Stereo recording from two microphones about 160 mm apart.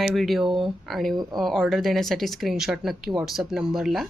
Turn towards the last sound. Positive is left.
turn(degrees=0)  # may be behind; listen again after turning